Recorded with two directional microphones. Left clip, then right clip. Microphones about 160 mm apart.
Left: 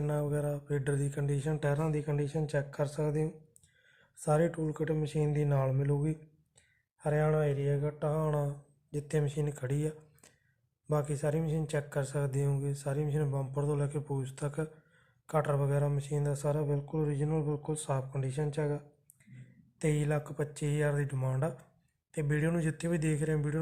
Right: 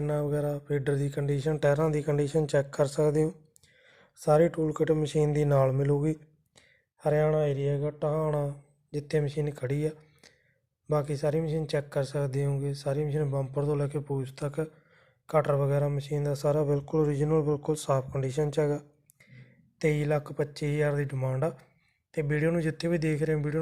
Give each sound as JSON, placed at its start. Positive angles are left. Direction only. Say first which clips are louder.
{"t": 0.0, "sound": "speech", "louder": "right 4 dB", "side_deg": -25}
{"t": 3.8, "sound": "speech", "louder": "right 7 dB", "side_deg": -30}
{"t": 6.6, "sound": "mantra", "louder": "right 6 dB", "side_deg": -30}
{"t": 10.8, "sound": "speech", "louder": "right 4 dB", "side_deg": -20}
{"t": 19.2, "sound": "speech", "louder": "right 5 dB", "side_deg": -30}